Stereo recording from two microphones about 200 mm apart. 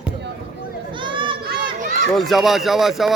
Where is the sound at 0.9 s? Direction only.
25° right (ahead or behind).